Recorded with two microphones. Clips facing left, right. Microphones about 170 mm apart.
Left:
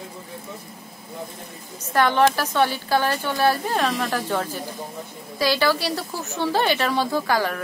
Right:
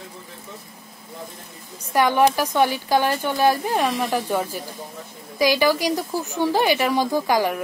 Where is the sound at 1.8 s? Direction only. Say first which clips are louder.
Right 1 dB; 10° right (ahead or behind).